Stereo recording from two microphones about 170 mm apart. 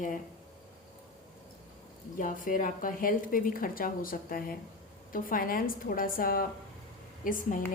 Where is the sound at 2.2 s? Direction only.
50° left (ahead or behind).